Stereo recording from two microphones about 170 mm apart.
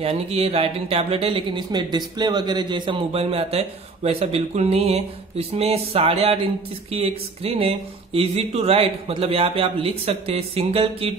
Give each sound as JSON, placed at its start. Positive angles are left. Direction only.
{"t": 0.0, "sound": "speech", "side_deg": -35}